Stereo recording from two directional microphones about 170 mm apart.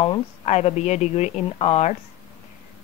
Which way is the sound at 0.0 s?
35° left (ahead or behind).